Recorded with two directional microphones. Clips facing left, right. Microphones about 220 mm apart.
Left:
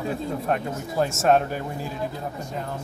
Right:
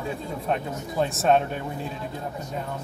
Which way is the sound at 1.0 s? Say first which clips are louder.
Left 1 dB; 5° left (ahead or behind).